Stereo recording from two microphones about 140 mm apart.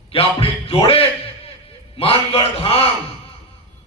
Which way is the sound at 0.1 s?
40° left (ahead or behind).